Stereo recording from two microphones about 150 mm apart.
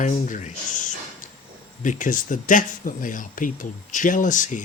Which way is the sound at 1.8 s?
60° left (ahead or behind).